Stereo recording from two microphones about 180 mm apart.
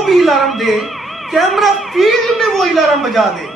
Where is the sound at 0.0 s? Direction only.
Centre (ahead or behind).